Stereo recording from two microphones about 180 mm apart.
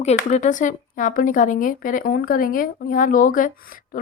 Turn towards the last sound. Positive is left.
turn(degrees=55)  # may be behind; listen again after turning